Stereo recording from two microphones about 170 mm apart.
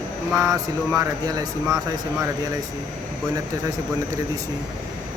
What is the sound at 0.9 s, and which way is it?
Speech, 20° right (ahead or behind).